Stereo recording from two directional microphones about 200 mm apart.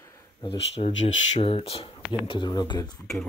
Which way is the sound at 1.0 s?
30° left (ahead or behind).